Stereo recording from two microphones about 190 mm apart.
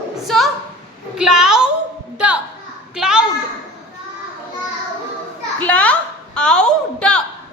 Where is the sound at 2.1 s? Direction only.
5° right (ahead or behind).